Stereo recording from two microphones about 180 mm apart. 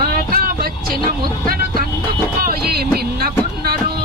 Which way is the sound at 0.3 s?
55° right (ahead or behind).